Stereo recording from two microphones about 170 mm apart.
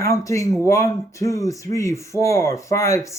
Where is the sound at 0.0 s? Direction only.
20° left (ahead or behind).